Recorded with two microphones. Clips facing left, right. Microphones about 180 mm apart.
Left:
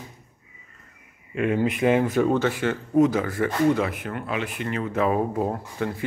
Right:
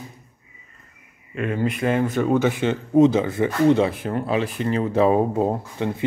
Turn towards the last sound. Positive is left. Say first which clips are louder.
# right 3 dB
turn(degrees=-20)  # may be behind; listen again after turning